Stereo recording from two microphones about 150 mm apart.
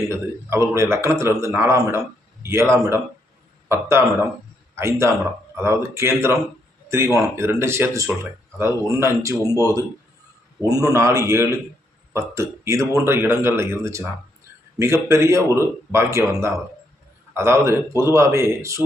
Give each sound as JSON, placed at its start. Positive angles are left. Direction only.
{"t": 0.1, "sound": "speech", "side_deg": -20}